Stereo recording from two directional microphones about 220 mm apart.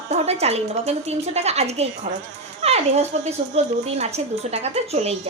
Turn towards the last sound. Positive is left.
turn(degrees=-30)  # may be behind; listen again after turning